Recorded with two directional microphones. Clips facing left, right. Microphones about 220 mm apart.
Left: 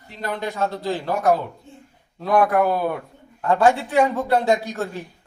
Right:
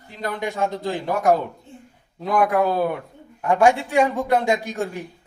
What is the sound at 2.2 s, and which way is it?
A man's voice, 15° right (ahead or behind).